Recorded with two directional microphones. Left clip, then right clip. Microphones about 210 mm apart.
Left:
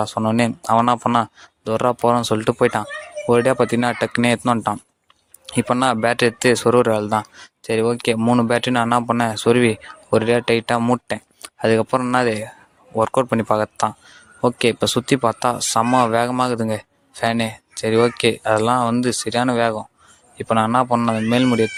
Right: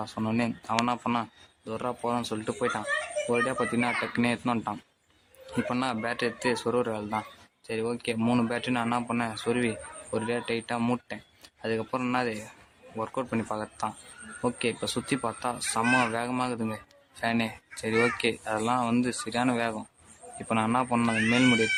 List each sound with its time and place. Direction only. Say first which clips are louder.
0.0 s speech: left 12 dB; 30° left (ahead or behind)
5.8 s speech: left 15 dB; 35° left (ahead or behind)
8.2 s speech: left 8 dB; 25° left (ahead or behind)
8.4 s speech: left 11 dB; 35° left (ahead or behind)
10.8 s speech: left 11 dB; 25° left (ahead or behind)
11.1 s speech: left 14 dB; 35° left (ahead or behind)